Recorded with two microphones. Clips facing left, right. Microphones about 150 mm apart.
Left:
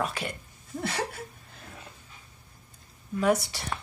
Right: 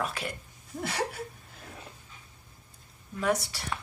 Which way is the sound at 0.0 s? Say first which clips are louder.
Left 2 dB; centre (ahead or behind).